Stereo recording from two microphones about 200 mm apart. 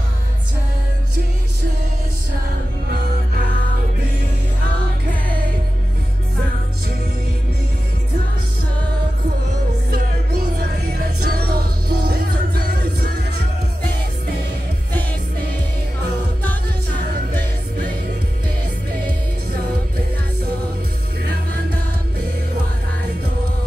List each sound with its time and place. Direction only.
9.8 s music: 50° right (ahead or behind)